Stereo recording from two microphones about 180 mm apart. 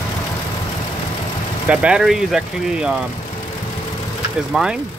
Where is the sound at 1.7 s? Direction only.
5° right (ahead or behind).